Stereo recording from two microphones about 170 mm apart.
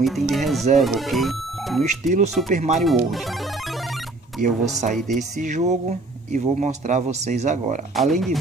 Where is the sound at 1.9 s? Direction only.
45° right (ahead or behind).